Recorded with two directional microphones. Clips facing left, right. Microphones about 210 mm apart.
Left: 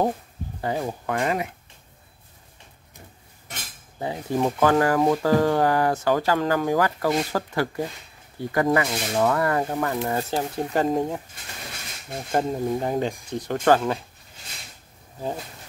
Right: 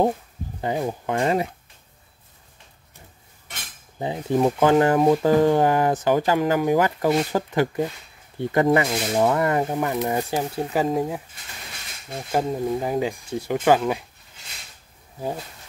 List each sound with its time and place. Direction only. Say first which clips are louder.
0.6 s speech: right 2 dB; 15° right (ahead or behind)
4.0 s speech: right 3 dB; 20° right (ahead or behind); by 11.2 s 5° right (ahead or behind)
12.3 s speech: right 1 dB; 5° right (ahead or behind)